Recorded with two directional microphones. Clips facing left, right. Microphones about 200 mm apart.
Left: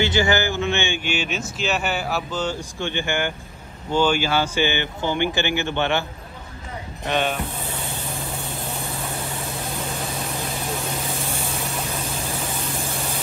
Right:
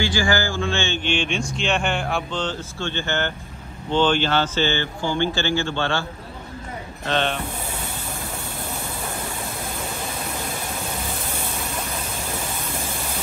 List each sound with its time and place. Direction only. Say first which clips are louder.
0.0 s speech: left 2 dB; 20° left (ahead or behind)
7.1 s speech: even; 10° left (ahead or behind)